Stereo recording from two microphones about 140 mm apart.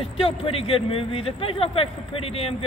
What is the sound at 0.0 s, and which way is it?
Speech, 40° left (ahead or behind).